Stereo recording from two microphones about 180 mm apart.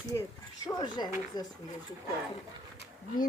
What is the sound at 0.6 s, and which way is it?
Speech, 25° left (ahead or behind).